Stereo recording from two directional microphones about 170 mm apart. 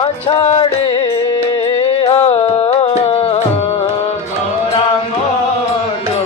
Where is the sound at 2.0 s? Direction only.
35° left (ahead or behind).